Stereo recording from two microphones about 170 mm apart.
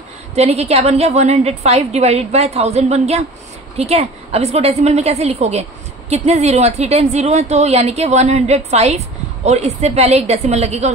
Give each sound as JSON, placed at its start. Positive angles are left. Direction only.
{"t": 0.4, "sound": "speech", "side_deg": -40}